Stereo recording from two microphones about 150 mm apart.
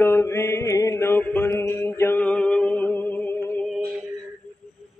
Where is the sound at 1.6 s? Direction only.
15° left (ahead or behind).